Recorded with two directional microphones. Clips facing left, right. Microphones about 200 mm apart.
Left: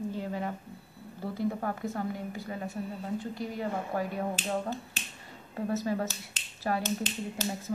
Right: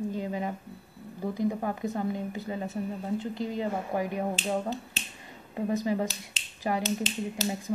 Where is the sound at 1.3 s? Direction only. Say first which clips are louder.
Right 2 dB; 15° right (ahead or behind).